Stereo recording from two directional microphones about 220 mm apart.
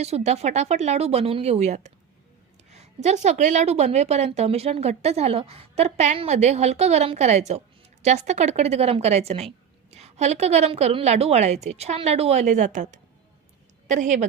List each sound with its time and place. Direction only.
0.0 s a woman's voice: 30° right (ahead or behind)